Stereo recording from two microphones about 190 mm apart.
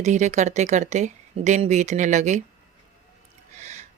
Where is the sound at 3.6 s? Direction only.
35° right (ahead or behind).